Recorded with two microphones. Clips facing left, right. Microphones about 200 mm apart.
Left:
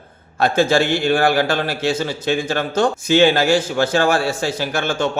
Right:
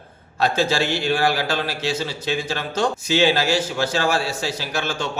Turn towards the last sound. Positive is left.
turn(degrees=55)  # may be behind; listen again after turning